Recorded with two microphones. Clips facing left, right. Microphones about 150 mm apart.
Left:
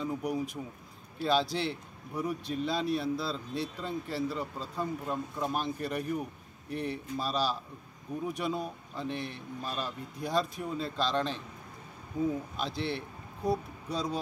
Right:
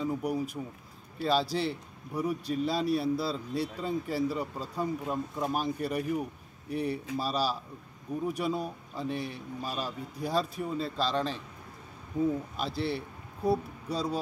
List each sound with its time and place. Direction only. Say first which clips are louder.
0.0 s a man's voice: right 2 dB; 5° right (ahead or behind)
12.5 s speech: right 2 dB; 5° right (ahead or behind)